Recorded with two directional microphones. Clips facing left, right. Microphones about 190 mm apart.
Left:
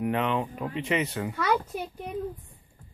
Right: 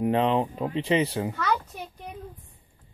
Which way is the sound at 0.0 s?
30° right (ahead or behind).